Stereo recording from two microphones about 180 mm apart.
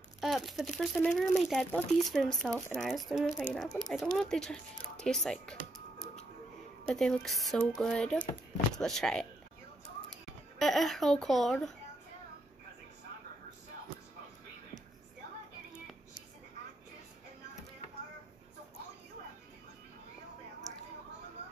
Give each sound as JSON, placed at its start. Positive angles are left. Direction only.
{"t": 0.2, "sound": "speech", "side_deg": 0}
{"t": 7.0, "sound": "speech", "side_deg": 0}
{"t": 10.6, "sound": "speech", "side_deg": 0}